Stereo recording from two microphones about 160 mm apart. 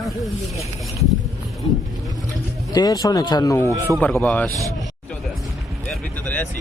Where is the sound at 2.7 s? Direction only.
25° left (ahead or behind).